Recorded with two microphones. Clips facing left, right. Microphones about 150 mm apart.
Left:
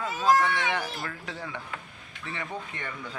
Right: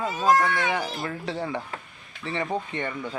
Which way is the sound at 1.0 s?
30° right (ahead or behind).